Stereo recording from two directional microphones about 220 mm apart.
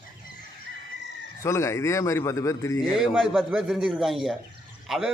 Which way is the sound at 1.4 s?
15° left (ahead or behind).